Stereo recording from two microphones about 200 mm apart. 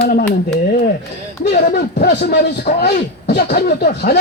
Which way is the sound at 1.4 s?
55° left (ahead or behind).